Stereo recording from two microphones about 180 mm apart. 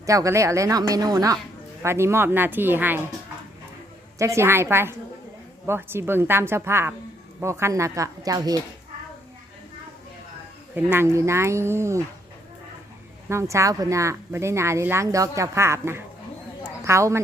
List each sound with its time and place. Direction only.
0.0 s speech: 15° right (ahead or behind)
4.2 s speech: 15° right (ahead or behind)
10.8 s speech: 10° right (ahead or behind)
13.2 s speech: 15° right (ahead or behind)